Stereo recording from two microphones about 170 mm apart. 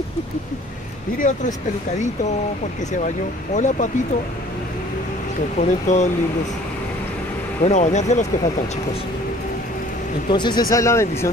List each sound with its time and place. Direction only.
3.5 s speech: 45° left (ahead or behind)
5.6 s speech: 45° left (ahead or behind)
7.6 s speech: 45° left (ahead or behind)
10.3 s speech: 25° left (ahead or behind)